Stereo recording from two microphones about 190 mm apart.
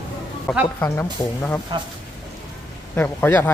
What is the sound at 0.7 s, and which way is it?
Speech, 10° left (ahead or behind).